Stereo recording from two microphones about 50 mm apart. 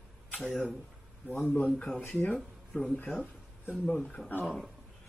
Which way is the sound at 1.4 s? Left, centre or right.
Left.